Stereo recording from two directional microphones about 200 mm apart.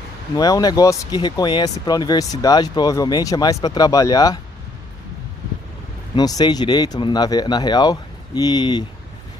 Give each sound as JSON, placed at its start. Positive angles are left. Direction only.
{"t": 0.4, "sound": "speech", "side_deg": 20}
{"t": 6.1, "sound": "speech", "side_deg": 20}